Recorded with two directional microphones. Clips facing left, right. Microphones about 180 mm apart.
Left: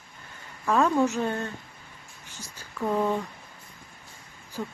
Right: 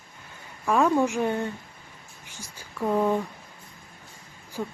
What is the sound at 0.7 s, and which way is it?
Speech, 10° right (ahead or behind).